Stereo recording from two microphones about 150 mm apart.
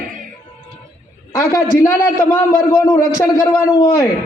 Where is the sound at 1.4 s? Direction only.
20° left (ahead or behind).